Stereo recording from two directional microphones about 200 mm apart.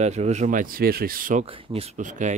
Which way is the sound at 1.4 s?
30° right (ahead or behind).